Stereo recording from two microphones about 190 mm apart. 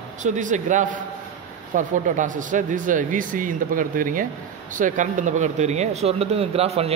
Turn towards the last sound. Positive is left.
turn(degrees=-30)  # may be behind; listen again after turning